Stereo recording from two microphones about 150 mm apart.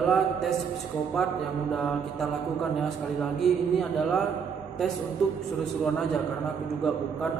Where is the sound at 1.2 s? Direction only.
Centre (ahead or behind).